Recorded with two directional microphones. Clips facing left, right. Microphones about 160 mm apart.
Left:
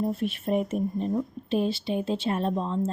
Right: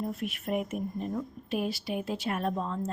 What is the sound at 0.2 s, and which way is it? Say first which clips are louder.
A woman's voice: left 5 dB; 30° left (ahead or behind).